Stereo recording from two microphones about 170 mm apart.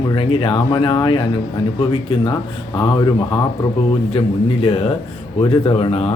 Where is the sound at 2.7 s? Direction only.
25° left (ahead or behind).